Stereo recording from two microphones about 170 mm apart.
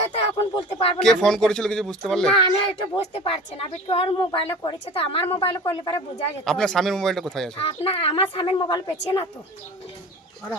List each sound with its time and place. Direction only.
0.1 s speech: 35° left (ahead or behind)
1.0 s speech: 5° left (ahead or behind)
2.5 s a woman's voice: 30° left (ahead or behind)
6.4 s speech: 5° left (ahead or behind)
7.5 s a woman's voice: 35° left (ahead or behind)